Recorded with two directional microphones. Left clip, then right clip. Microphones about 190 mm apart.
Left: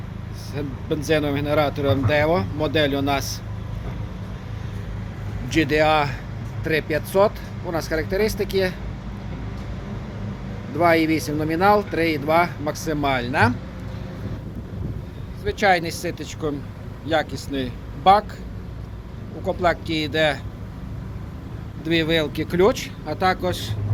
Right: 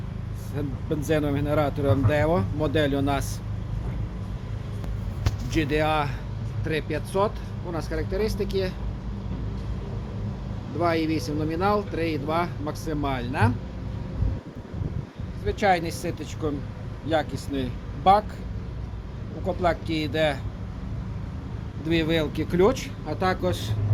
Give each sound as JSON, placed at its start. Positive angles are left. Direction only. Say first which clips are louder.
{"t": 0.5, "sound": "speech", "louder": "left 3 dB", "side_deg": 0}
{"t": 5.5, "sound": "speech", "louder": "left 6 dB", "side_deg": 20}
{"t": 10.8, "sound": "speech", "louder": "left 7 dB", "side_deg": 35}
{"t": 15.4, "sound": "speech", "louder": "left 4 dB", "side_deg": 5}
{"t": 19.5, "sound": "speech", "louder": "left 4 dB", "side_deg": 5}
{"t": 21.8, "sound": "speech", "louder": "left 4 dB", "side_deg": 0}